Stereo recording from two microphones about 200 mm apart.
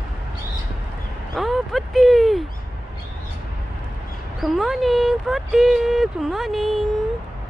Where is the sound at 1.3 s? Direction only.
Centre (ahead or behind).